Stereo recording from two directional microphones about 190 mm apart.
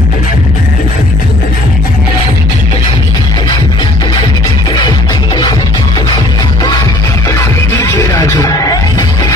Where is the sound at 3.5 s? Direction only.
25° left (ahead or behind).